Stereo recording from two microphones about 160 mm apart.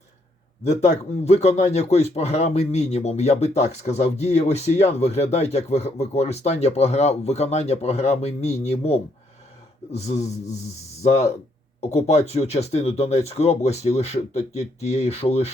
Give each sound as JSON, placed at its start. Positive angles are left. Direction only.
{"t": 0.6, "sound": "a man's voice", "side_deg": 45}